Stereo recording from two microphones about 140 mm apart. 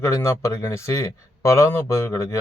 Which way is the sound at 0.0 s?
20° left (ahead or behind).